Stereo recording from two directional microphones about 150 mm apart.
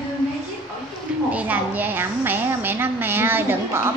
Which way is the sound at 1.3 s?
10° right (ahead or behind).